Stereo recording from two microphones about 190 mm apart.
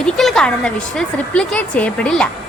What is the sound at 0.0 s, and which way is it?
A woman's voice, centre (ahead or behind).